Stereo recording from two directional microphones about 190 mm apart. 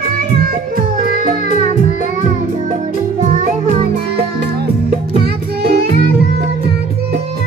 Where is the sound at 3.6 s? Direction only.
30° right (ahead or behind).